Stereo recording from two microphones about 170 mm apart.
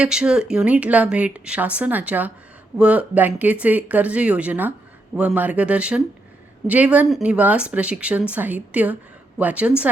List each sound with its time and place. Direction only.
0.0 s speech: 5° right (ahead or behind)